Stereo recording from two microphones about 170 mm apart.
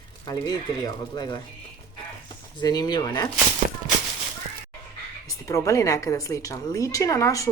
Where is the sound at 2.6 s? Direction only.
25° left (ahead or behind).